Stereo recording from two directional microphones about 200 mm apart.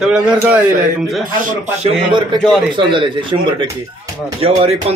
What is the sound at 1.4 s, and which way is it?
Speech, 35° right (ahead or behind).